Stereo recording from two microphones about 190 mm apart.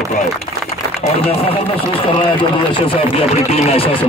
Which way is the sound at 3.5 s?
30° left (ahead or behind).